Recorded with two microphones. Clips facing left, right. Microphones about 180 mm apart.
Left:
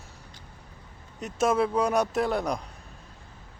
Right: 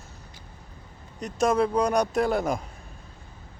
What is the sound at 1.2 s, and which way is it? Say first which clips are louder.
Speech: right 1 dB; 5° left (ahead or behind).